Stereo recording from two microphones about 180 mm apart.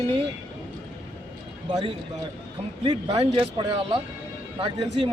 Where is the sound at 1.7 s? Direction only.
25° right (ahead or behind).